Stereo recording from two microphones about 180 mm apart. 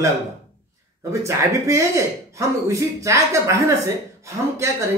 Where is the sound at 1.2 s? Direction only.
15° right (ahead or behind).